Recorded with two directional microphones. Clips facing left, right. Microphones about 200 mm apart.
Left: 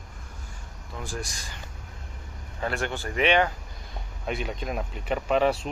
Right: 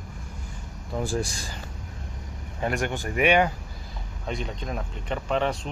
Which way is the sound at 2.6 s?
15° right (ahead or behind).